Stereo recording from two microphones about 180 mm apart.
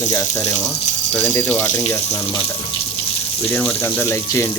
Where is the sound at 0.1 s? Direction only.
20° left (ahead or behind).